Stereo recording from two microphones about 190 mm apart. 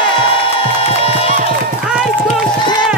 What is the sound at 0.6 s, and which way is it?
Music, 30° left (ahead or behind).